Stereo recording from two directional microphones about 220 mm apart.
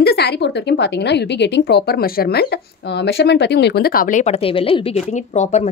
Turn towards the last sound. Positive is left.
turn(degrees=30)  # may be behind; listen again after turning